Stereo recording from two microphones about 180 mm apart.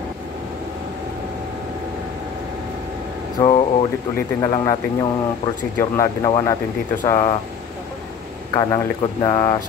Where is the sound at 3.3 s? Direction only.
25° left (ahead or behind).